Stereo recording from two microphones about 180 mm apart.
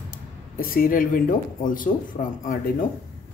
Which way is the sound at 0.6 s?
50° left (ahead or behind).